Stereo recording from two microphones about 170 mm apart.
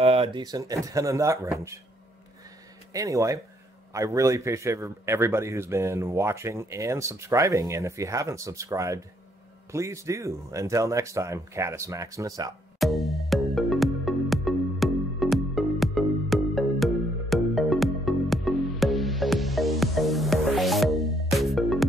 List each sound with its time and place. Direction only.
0.0 s speech: 35° right (ahead or behind); by 1.8 s 15° right (ahead or behind)
2.9 s a man's voice: 20° right (ahead or behind)
12.7 s music: centre (ahead or behind)